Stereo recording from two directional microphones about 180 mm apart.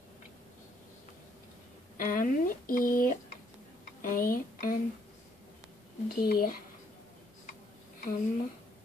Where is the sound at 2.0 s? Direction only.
50° left (ahead or behind).